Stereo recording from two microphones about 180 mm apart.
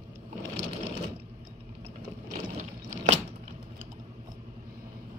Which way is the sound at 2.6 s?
40° right (ahead or behind).